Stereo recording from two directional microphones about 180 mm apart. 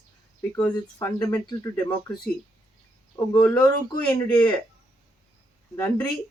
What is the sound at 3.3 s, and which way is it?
Speech, 20° left (ahead or behind).